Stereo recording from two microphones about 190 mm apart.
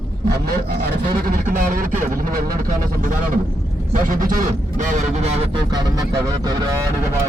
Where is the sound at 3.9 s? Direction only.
45° right (ahead or behind).